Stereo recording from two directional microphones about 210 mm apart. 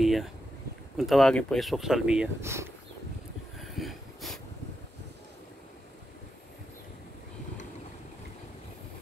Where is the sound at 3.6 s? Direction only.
Centre (ahead or behind).